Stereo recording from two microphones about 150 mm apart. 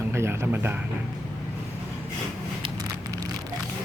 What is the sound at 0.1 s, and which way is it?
Speech, 15° right (ahead or behind).